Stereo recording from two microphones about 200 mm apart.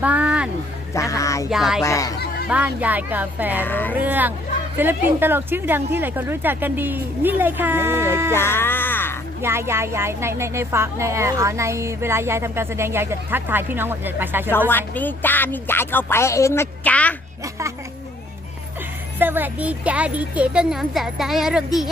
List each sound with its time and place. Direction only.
0.0 s a sound: 5° right (ahead or behind)
0.9 s a sound: 15° left (ahead or behind)
1.5 s speech: centre (ahead or behind)
1.8 s speech: 15° left (ahead or behind)
2.5 s speech: 10° right (ahead or behind)
3.6 s speech: 10° left (ahead or behind)
3.9 s speech: 10° right (ahead or behind)
8.3 s speech: 10° left (ahead or behind)
9.4 s speech: 10° right (ahead or behind)
14.7 s speech: 10° left (ahead or behind)
19.2 s speech: 10° right (ahead or behind)